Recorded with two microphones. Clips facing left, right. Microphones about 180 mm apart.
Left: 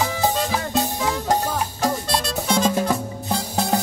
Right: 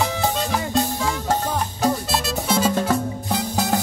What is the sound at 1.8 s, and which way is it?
Music, 5° right (ahead or behind).